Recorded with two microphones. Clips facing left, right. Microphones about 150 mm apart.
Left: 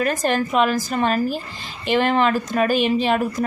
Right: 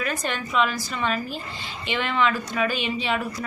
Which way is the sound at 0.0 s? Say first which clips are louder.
Left 8 dB; 45° left (ahead or behind).